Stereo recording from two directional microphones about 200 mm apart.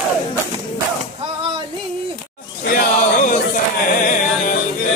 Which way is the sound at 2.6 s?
45° left (ahead or behind).